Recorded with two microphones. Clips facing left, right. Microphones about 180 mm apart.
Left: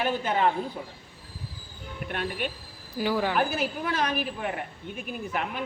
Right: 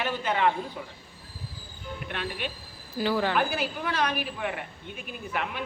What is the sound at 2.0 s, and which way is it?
Speech, 45° left (ahead or behind).